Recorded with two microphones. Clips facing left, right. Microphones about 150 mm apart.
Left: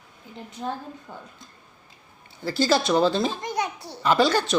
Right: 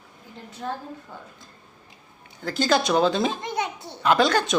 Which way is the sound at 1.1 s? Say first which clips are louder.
Left 1 dB; 15° left (ahead or behind).